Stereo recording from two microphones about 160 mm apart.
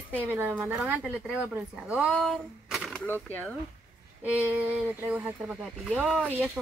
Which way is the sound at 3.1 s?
10° left (ahead or behind).